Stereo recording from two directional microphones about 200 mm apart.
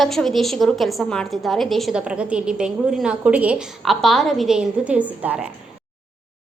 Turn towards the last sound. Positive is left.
turn(degrees=-5)  # may be behind; listen again after turning